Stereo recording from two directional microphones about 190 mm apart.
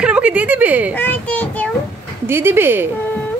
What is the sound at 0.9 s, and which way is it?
Speech, 10° left (ahead or behind).